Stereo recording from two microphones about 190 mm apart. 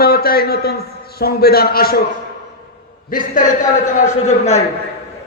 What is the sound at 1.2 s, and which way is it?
Speech, 55° left (ahead or behind).